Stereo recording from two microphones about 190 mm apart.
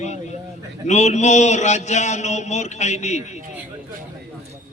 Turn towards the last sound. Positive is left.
turn(degrees=35)  # may be behind; listen again after turning